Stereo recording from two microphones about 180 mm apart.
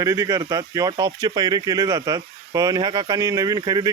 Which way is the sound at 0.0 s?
15° right (ahead or behind).